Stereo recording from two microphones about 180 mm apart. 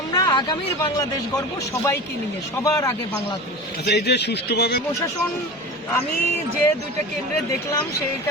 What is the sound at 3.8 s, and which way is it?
Speech, 70° left (ahead or behind).